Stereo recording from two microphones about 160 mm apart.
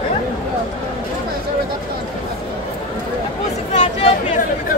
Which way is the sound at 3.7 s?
50° left (ahead or behind).